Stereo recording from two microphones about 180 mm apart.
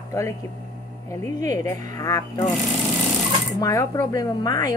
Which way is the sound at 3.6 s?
20° left (ahead or behind).